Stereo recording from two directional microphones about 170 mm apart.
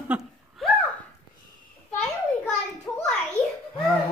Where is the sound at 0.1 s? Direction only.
5° right (ahead or behind).